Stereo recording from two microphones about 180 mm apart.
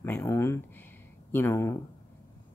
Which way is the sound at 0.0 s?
15° left (ahead or behind).